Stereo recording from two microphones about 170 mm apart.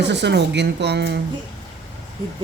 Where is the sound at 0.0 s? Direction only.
85° right.